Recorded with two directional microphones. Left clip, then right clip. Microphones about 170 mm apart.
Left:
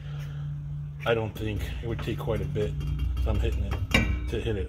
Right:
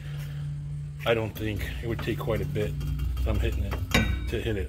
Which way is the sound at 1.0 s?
25° left (ahead or behind).